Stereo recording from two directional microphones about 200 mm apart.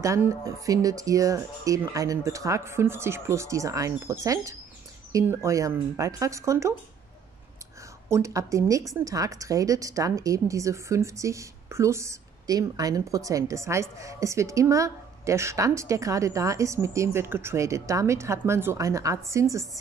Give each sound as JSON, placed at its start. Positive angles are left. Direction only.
{"t": 0.0, "sound": "a woman's voice", "side_deg": -15}
{"t": 8.1, "sound": "a woman's voice", "side_deg": -15}